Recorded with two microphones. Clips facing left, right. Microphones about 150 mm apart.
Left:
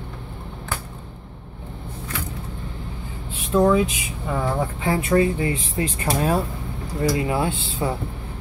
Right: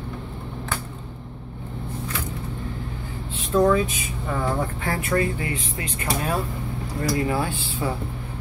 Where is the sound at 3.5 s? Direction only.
15° left (ahead or behind).